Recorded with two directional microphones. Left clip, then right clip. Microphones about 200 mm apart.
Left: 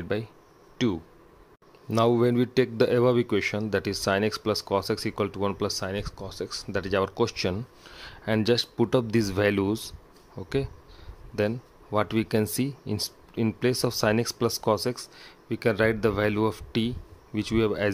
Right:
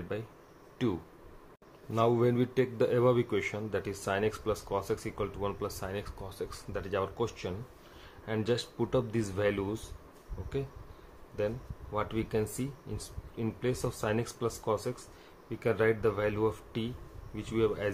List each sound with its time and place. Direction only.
0.1 s a man's voice: 50° left (ahead or behind)
0.8 s speech: 35° left (ahead or behind)
1.9 s a man's voice: 45° left (ahead or behind)